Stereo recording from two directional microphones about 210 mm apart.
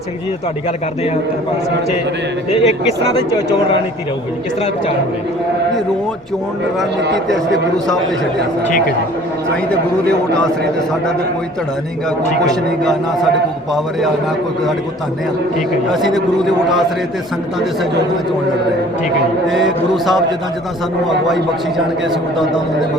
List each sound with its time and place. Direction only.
2.5 s speech: 30° left (ahead or behind)
10.1 s a man's voice: 5° left (ahead or behind)
12.8 s a man's voice: centre (ahead or behind)
15.9 s a man's voice: centre (ahead or behind)
19.5 s a man's voice: centre (ahead or behind)